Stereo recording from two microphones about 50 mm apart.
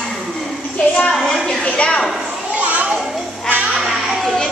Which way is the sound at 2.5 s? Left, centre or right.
Right.